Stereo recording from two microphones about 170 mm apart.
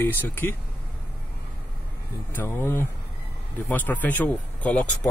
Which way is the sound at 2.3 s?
15° left (ahead or behind).